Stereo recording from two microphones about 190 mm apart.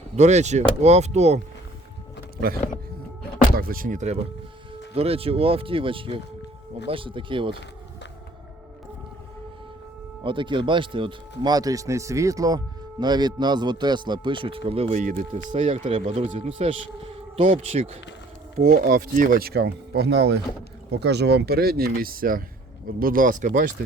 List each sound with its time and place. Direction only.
0.2 s speech: 35° right (ahead or behind)
3.5 s speech: 50° right (ahead or behind); by 7.6 s 25° right (ahead or behind)
10.2 s speech: 25° right (ahead or behind)
18.6 s speech: 50° right (ahead or behind)